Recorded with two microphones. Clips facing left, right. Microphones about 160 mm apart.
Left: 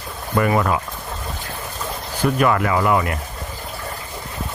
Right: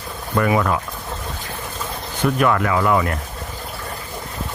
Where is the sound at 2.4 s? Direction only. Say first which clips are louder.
Even; 5° left (ahead or behind).